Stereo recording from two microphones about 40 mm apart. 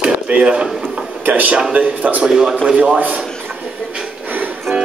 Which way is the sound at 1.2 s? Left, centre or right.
Right.